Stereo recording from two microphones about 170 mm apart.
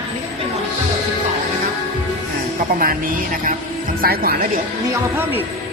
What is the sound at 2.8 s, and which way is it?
Speech, 55° right (ahead or behind).